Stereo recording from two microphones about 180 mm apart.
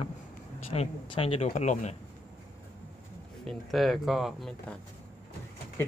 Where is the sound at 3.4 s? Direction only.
Centre (ahead or behind).